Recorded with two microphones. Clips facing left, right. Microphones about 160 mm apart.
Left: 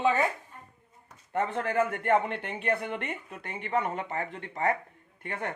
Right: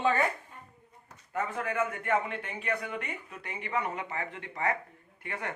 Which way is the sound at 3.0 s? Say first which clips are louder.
Left 3 dB; 60° left (ahead or behind).